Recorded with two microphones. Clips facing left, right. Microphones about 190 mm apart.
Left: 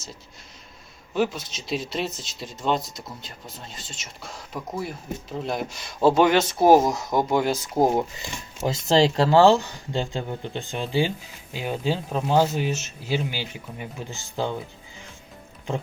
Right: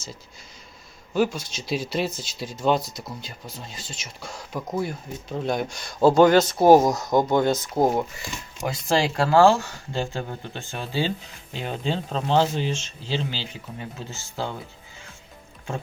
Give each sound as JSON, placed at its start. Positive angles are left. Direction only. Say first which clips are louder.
{"t": 1.1, "sound": "speech", "louder": "right 1 dB", "side_deg": 0}
{"t": 7.8, "sound": "speech", "louder": "left 3 dB", "side_deg": 20}